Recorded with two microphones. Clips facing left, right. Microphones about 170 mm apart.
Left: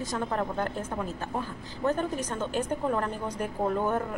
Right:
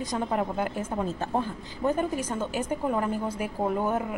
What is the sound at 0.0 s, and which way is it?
A woman's voice, 15° right (ahead or behind).